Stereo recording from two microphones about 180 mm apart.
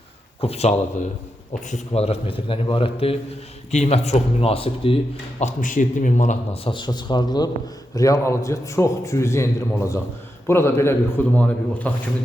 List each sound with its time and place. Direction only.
0.4 s a man's voice: 35° left (ahead or behind)
1.7 s a man's voice: 35° left (ahead or behind)
5.4 s speech: 45° left (ahead or behind)
6.7 s a man's voice: 25° left (ahead or behind); by 11.9 s 10° left (ahead or behind)